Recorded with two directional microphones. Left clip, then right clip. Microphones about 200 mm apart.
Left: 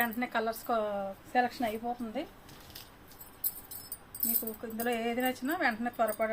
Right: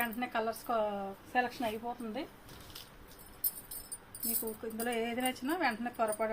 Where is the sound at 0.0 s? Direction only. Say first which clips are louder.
Left 3 dB; 30° left (ahead or behind).